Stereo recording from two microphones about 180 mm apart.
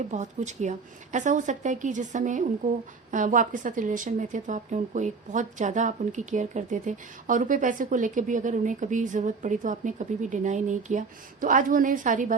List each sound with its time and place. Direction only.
0.0 s a woman's voice: 40° right (ahead or behind)